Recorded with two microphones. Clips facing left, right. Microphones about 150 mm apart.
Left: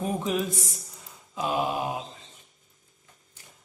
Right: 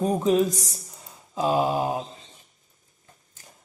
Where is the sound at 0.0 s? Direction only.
35° right (ahead or behind).